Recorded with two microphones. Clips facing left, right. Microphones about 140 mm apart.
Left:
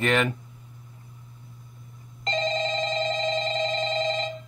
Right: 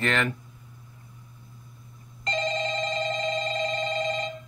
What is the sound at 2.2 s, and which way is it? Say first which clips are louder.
Telephone bell ringing: left 2 dB; 25° left (ahead or behind).